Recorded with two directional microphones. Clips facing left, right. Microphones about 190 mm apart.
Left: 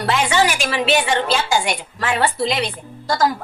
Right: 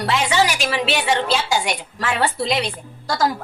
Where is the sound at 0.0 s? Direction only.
50° left (ahead or behind).